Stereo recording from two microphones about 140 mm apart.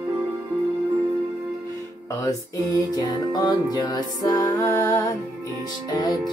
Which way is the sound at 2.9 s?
30° left (ahead or behind).